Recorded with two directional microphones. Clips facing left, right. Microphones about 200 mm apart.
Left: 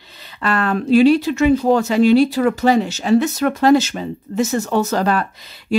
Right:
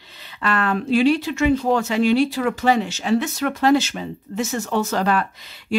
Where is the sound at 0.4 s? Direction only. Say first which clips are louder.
Left 3 dB; 40° left (ahead or behind).